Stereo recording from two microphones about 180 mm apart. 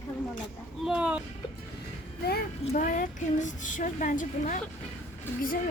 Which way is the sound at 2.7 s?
45° left (ahead or behind).